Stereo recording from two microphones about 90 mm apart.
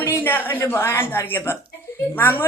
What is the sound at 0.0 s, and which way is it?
A woman's voice, 25° left (ahead or behind).